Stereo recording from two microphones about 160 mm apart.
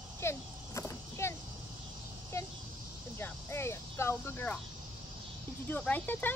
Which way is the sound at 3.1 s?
15° left (ahead or behind).